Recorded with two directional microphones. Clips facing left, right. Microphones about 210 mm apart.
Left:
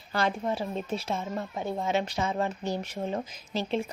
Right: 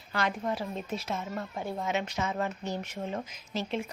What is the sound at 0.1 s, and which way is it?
A woman's voice, 30° left (ahead or behind).